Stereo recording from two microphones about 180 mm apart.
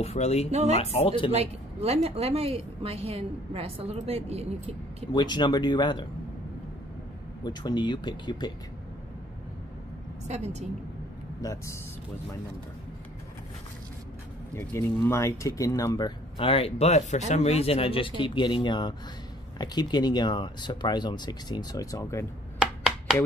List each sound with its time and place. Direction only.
0.0 s speech: 35° left (ahead or behind)
0.5 s a woman's voice: 35° right (ahead or behind)
0.9 s speech: 30° left (ahead or behind)
1.3 s a woman's voice: 35° right (ahead or behind)
5.1 s speech: 25° left (ahead or behind)
7.4 s speech: 25° left (ahead or behind)
10.2 s a woman's voice: 40° right (ahead or behind)
11.4 s speech: 15° left (ahead or behind)
14.5 s speech: 15° left (ahead or behind)
16.3 s speech: 30° left (ahead or behind)
22.6 s a sound: centre (ahead or behind)